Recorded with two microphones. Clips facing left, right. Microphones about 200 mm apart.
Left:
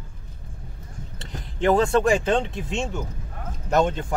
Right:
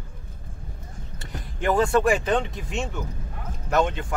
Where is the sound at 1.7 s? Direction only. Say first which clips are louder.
Left 1 dB; 25° left (ahead or behind).